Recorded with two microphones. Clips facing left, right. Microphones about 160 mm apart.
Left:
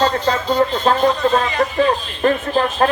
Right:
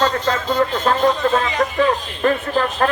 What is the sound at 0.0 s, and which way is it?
A man's voice, 25° left (ahead or behind).